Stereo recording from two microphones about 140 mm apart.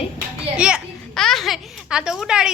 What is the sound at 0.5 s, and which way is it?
Children playing, 5° right (ahead or behind).